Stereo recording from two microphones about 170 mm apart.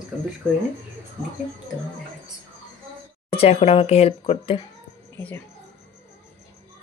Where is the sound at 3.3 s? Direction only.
35° left (ahead or behind).